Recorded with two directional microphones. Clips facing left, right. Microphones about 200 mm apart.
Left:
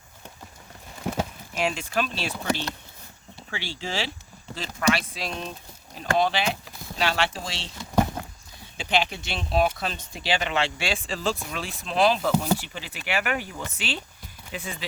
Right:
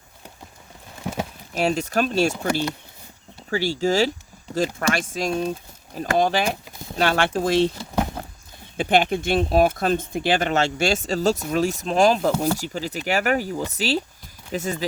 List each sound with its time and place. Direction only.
1.5 s speech: 40° right (ahead or behind)
2.5 s speech: 10° right (ahead or behind)
3.5 s speech: 40° right (ahead or behind)
8.8 s speech: 50° right (ahead or behind)